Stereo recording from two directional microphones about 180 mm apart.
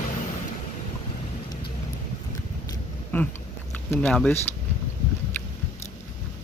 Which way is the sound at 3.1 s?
10° left (ahead or behind).